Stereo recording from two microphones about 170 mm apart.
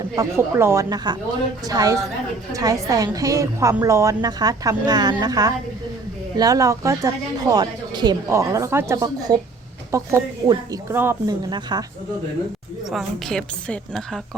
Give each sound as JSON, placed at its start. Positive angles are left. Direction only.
{"t": 0.2, "sound": "a woman's voice", "side_deg": -15}
{"t": 12.9, "sound": "a woman's voice", "side_deg": 0}